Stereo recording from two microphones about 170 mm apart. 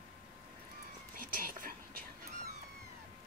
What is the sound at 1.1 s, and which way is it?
Whispering, 55° right (ahead or behind).